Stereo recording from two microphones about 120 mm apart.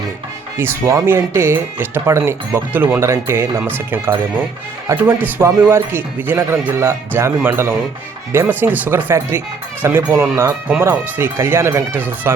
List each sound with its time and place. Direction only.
0.5 s speech: 20° right (ahead or behind)